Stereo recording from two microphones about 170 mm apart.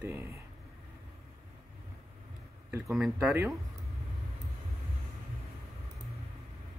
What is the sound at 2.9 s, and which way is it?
Speech, centre (ahead or behind).